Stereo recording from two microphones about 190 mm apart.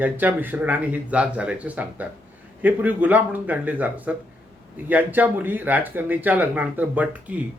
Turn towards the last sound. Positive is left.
turn(degrees=-5)  # may be behind; listen again after turning